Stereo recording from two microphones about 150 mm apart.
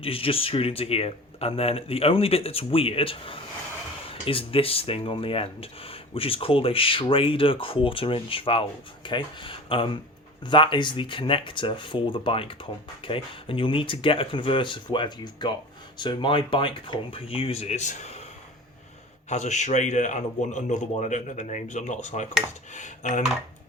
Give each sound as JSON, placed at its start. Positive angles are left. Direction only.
{"t": 0.0, "sound": "speech", "side_deg": 40}
{"t": 19.3, "sound": "speech", "side_deg": 50}